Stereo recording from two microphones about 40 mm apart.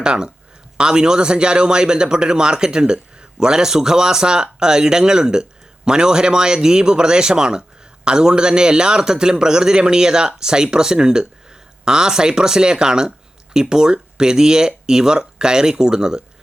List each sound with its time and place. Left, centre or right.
0.0 s a man's voice: right